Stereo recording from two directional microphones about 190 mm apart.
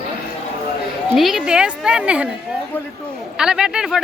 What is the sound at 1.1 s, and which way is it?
Speech, centre (ahead or behind).